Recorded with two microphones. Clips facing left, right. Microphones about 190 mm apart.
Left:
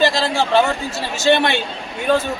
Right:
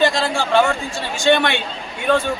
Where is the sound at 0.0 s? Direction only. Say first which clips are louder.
Left 1 dB; centre (ahead or behind).